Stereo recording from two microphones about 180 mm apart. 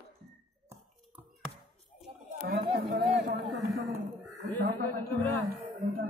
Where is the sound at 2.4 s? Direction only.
60° right (ahead or behind).